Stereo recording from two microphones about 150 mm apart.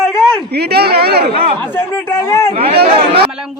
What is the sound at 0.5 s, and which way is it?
Speech, 90° right.